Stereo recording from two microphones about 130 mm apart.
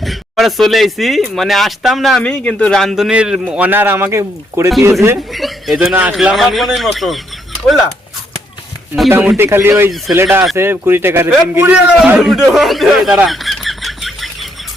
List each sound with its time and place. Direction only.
0.0 s speech: centre (ahead or behind); by 4.7 s 20° right (ahead or behind)
5.1 s speech: centre (ahead or behind)
9.0 s a man's voice: 15° right (ahead or behind)
13.2 s bird: centre (ahead or behind)